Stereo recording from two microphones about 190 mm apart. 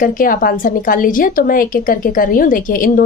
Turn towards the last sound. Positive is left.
turn(degrees=45)  # may be behind; listen again after turning